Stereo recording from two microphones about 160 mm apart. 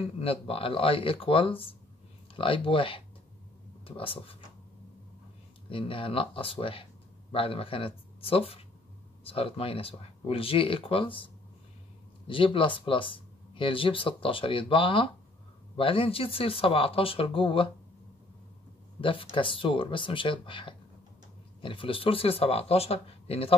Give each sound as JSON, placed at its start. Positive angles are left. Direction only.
{"t": 0.0, "sound": "speech", "side_deg": 35}
{"t": 5.7, "sound": "speech", "side_deg": 35}
{"t": 12.3, "sound": "speech", "side_deg": 35}
{"t": 18.9, "sound": "speech", "side_deg": 35}